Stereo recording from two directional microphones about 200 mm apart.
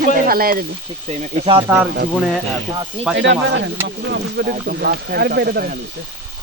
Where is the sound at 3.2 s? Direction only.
65° right (ahead or behind).